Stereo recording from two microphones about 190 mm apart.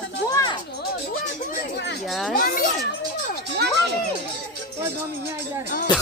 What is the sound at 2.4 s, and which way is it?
Speech, 50° left (ahead or behind).